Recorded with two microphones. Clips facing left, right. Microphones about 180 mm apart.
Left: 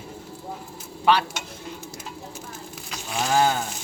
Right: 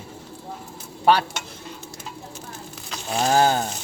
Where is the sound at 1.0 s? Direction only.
40° right (ahead or behind).